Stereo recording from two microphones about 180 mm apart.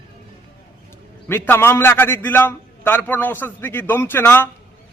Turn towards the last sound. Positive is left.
turn(degrees=10)  # may be behind; listen again after turning